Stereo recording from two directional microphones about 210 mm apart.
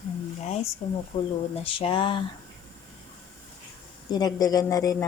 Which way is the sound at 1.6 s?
25° left (ahead or behind).